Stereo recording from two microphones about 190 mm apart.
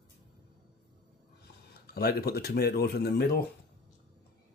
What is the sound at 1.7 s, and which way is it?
Speech, 55° left (ahead or behind).